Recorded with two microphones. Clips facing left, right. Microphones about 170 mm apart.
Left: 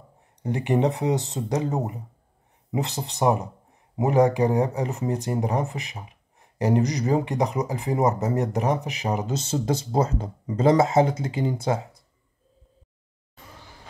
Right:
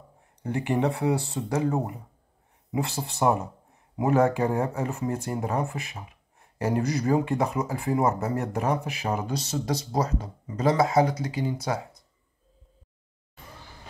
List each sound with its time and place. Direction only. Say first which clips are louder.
0.4 s speech: left 3 dB; 20° left (ahead or behind)